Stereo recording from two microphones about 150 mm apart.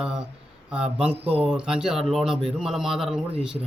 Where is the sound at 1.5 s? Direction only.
5° right (ahead or behind).